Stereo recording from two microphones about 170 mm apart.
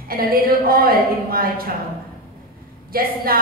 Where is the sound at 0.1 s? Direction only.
60° right (ahead or behind).